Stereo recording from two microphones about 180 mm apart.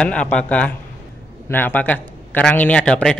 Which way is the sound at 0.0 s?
5° left (ahead or behind).